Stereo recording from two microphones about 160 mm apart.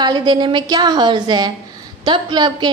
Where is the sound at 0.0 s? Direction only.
25° right (ahead or behind).